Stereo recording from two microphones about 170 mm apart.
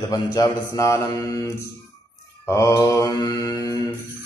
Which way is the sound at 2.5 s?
20° left (ahead or behind).